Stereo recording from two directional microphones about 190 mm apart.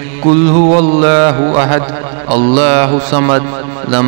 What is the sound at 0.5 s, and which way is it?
A man's voice, 30° right (ahead or behind).